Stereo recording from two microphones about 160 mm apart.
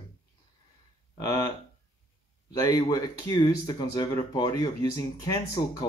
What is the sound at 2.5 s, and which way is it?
Speech, 25° left (ahead or behind).